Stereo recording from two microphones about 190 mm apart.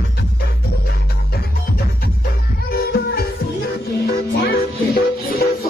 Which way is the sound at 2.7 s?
55° left (ahead or behind).